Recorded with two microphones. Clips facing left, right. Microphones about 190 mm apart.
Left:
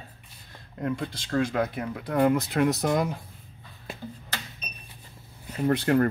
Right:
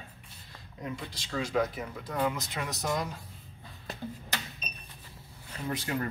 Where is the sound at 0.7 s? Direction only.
55° left (ahead or behind).